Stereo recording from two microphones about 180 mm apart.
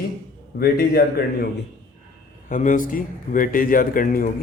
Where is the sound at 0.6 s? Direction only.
60° left (ahead or behind).